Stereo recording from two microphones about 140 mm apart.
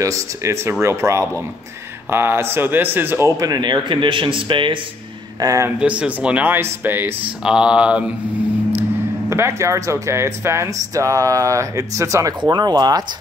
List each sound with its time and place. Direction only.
0.0 s speech: 20° right (ahead or behind)
5.4 s speech: 25° right (ahead or behind)
5.8 s speech: 10° right (ahead or behind)
9.3 s speech: 20° right (ahead or behind)